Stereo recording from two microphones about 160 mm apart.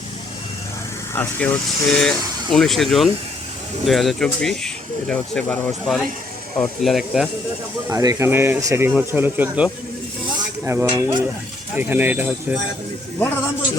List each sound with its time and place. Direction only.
1.1 s speech: 15° left (ahead or behind)
6.6 s speech: centre (ahead or behind)
7.9 s speech: 20° right (ahead or behind)
10.7 s speech: 15° right (ahead or behind)
13.1 s a man's voice: 15° left (ahead or behind)